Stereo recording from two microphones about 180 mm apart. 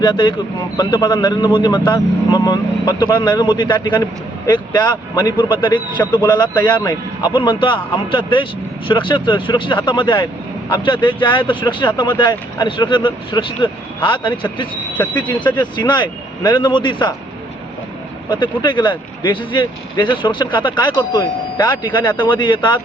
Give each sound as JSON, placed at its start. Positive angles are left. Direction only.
{"t": 0.0, "sound": "speech", "side_deg": 25}
{"t": 18.3, "sound": "speech", "side_deg": 25}